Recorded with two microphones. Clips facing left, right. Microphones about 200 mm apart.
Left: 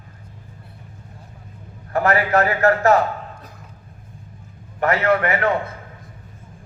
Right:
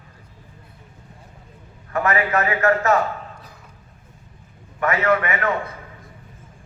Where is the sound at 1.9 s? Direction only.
35° left (ahead or behind).